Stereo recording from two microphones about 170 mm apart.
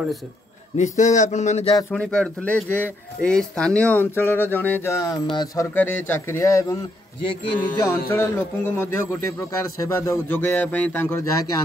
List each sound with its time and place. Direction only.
0.7 s speech: 45° left (ahead or behind)
1.9 s a man's voice: 5° left (ahead or behind); by 5.7 s 25° left (ahead or behind)
5.8 s a man's voice: 10° left (ahead or behind)
7.8 s a man's voice: 15° left (ahead or behind)